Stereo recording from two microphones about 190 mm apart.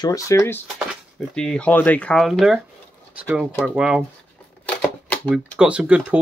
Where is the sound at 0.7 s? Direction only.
5° left (ahead or behind).